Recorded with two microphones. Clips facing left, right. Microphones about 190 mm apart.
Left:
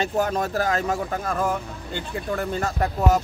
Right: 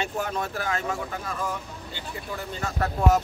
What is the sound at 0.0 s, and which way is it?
Speech, 40° left (ahead or behind).